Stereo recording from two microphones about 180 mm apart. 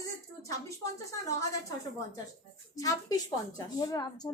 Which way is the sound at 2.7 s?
20° left (ahead or behind).